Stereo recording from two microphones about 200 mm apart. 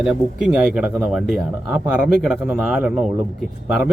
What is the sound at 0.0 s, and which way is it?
Speech, 5° right (ahead or behind).